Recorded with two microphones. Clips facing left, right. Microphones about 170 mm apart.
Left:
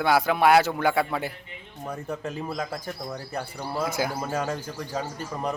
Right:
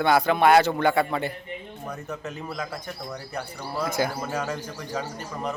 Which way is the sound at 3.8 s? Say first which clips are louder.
Right 3 dB; 5° left (ahead or behind).